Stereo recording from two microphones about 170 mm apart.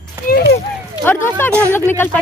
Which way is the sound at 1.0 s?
10° left (ahead or behind).